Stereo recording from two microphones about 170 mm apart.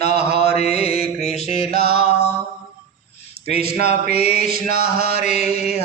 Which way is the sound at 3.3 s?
35° left (ahead or behind).